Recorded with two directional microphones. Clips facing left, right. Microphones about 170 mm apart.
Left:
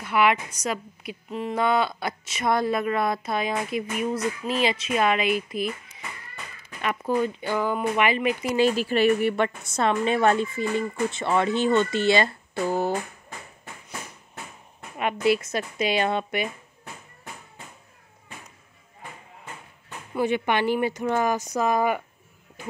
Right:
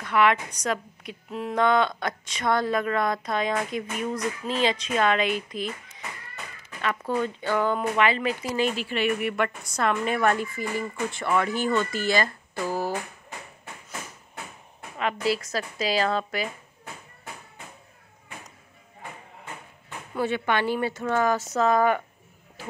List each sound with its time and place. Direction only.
0.0 s a woman's voice: 10° left (ahead or behind)
6.8 s a woman's voice: 15° left (ahead or behind)
8.5 s speech: 35° left (ahead or behind)
9.4 s speech: 25° left (ahead or behind)
15.4 s speech: 20° left (ahead or behind)
20.2 s a woman's voice: 15° left (ahead or behind)